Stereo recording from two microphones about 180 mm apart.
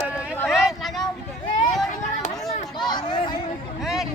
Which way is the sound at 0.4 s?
Centre (ahead or behind).